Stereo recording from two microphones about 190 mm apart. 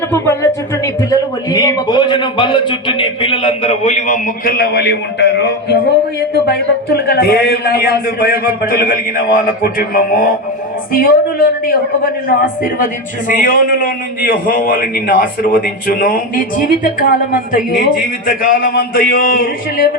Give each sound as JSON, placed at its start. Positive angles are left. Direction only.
{"t": 0.1, "sound": "speech", "side_deg": 15}
{"t": 4.5, "sound": "a man's voice", "side_deg": 55}
{"t": 12.8, "sound": "a man's voice", "side_deg": 45}